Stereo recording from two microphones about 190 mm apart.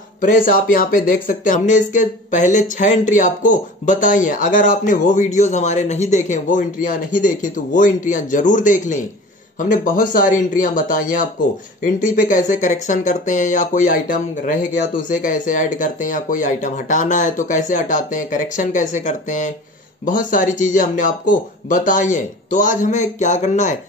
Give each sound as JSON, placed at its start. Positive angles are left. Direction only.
{"t": 0.2, "sound": "speech", "side_deg": 45}